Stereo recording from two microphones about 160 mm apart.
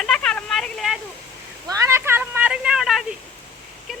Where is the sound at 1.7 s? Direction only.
20° right (ahead or behind); by 3.1 s centre (ahead or behind).